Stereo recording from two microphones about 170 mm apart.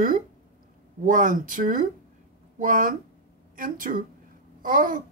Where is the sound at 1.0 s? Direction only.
50° right (ahead or behind).